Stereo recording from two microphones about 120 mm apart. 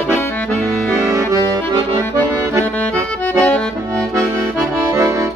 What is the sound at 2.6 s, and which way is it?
Accordion, 10° left (ahead or behind).